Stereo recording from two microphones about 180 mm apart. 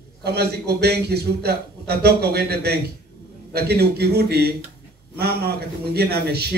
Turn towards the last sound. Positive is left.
turn(degrees=-60)  # may be behind; listen again after turning